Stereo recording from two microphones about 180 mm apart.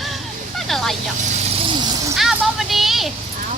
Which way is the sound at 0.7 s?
Centre (ahead or behind).